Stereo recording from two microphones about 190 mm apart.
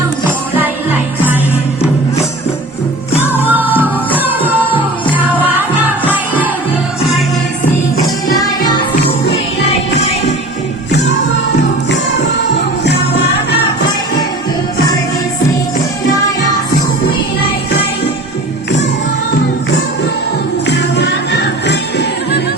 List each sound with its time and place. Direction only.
3.5 s music: 10° right (ahead or behind)
8.3 s music: 20° left (ahead or behind)
20.7 s music: 65° left (ahead or behind)